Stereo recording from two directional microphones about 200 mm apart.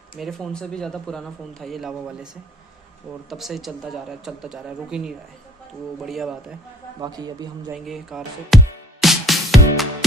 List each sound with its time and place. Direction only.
0.2 s speech: centre (ahead or behind)
3.3 s speech: centre (ahead or behind)
7.0 s a man's voice: 20° right (ahead or behind)
7.7 s speech: centre (ahead or behind)
9.0 s music: centre (ahead or behind)